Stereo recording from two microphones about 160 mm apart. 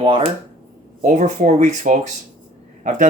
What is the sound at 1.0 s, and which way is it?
Speech, 50° right (ahead or behind).